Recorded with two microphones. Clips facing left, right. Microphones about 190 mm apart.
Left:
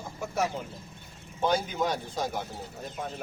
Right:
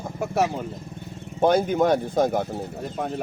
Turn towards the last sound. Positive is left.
turn(degrees=-65)  # may be behind; listen again after turning